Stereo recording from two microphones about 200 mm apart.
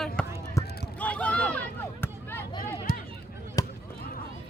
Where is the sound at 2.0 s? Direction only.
10° left (ahead or behind).